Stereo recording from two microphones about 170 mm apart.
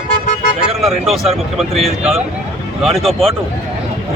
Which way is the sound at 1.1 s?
Centre (ahead or behind).